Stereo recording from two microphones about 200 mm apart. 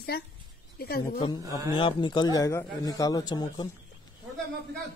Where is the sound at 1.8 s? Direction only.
25° left (ahead or behind).